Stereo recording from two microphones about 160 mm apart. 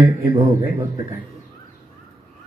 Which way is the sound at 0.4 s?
20° right (ahead or behind).